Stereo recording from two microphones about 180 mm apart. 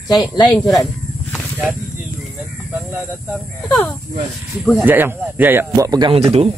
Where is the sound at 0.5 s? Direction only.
Centre (ahead or behind).